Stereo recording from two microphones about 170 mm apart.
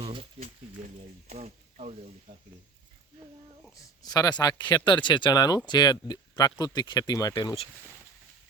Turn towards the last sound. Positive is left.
turn(degrees=25)  # may be behind; listen again after turning